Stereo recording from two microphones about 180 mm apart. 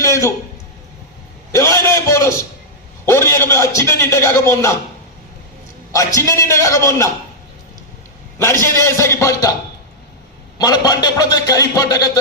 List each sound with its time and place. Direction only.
0.0 s a sound: 15° left (ahead or behind)
1.5 s a sound: 15° left (ahead or behind)
3.1 s a man's voice: 15° left (ahead or behind)
5.9 s a man's voice: 15° left (ahead or behind)
8.4 s a man's voice: 15° left (ahead or behind)
10.6 s speech: 20° left (ahead or behind)